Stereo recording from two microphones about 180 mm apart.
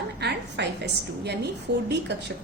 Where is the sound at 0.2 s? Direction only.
70° right (ahead or behind).